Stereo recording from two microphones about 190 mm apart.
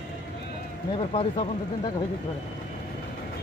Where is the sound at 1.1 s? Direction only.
30° left (ahead or behind).